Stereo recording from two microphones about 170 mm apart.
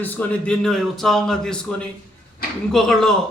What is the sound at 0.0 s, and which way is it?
A man's voice, 10° left (ahead or behind).